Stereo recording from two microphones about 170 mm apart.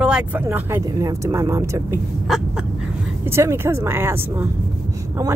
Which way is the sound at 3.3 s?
15° right (ahead or behind).